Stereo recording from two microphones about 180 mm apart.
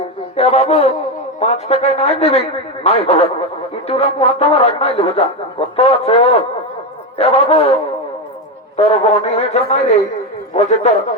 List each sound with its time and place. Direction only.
0.0 s music: 35° left (ahead or behind)
1.4 s a man's voice: 40° left (ahead or behind)